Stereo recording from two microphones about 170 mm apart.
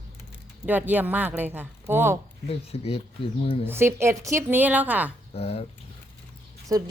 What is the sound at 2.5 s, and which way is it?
Speech, 35° left (ahead or behind).